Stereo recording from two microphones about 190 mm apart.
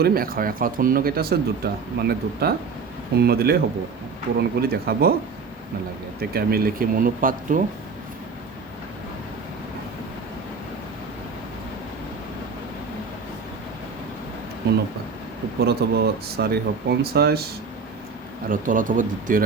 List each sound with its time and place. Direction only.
0.0 s speech: 50° right (ahead or behind)
6.1 s speech: 50° right (ahead or behind)
15.6 s speech: 55° right (ahead or behind)
18.4 s speech: 45° right (ahead or behind)